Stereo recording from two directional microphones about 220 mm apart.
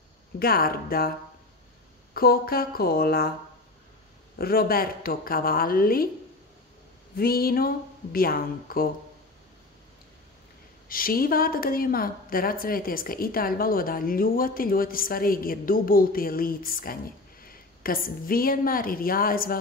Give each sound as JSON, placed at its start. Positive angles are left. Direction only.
{"t": 0.4, "sound": "speech", "side_deg": 45}
{"t": 2.1, "sound": "speech", "side_deg": 45}
{"t": 4.4, "sound": "a woman's voice", "side_deg": 45}
{"t": 7.2, "sound": "speech", "side_deg": 45}
{"t": 10.9, "sound": "a woman's voice", "side_deg": 40}